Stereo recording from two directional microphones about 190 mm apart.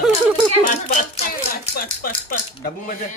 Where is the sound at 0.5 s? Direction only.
40° left (ahead or behind).